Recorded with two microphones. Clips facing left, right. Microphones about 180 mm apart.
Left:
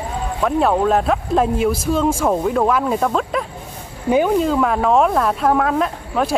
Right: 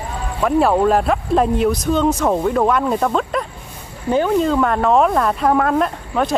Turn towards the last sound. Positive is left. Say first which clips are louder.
# right 1 dB
turn(degrees=0)  # may be behind; listen again after turning